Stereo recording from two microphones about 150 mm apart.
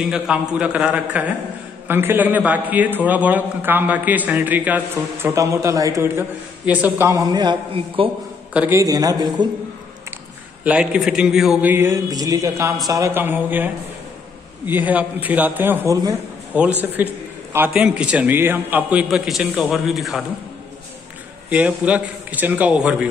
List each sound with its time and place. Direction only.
0.0 s a man's voice: 5° right (ahead or behind); by 8.1 s 35° right (ahead or behind)
8.5 s a sound: 15° right (ahead or behind)
10.6 s a man's voice: 5° right (ahead or behind)
11.7 s a sound: 15° right (ahead or behind)
12.8 s a man's voice: 20° right (ahead or behind)
14.7 s a man's voice: 10° right (ahead or behind)
21.5 s a man's voice: 10° right (ahead or behind)